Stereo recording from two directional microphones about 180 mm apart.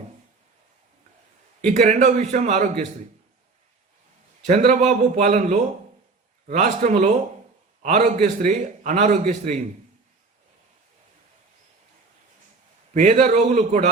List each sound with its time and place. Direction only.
1.6 s a man's voice: 40° right (ahead or behind)
4.4 s a man's voice: 40° right (ahead or behind)
12.9 s a man's voice: 40° right (ahead or behind)